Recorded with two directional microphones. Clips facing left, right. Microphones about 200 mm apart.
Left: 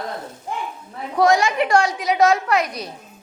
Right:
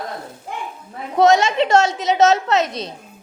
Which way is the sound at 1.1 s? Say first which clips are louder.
Right 3 dB; 25° right (ahead or behind).